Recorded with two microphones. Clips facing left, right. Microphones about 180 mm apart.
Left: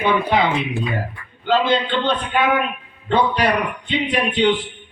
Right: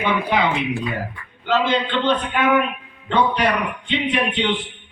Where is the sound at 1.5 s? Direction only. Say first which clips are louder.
Left 2 dB; 30° left (ahead or behind).